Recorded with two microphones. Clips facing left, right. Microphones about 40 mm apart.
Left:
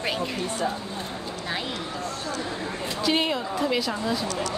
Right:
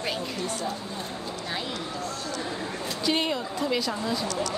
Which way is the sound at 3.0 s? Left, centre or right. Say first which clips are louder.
Left 2 dB; centre.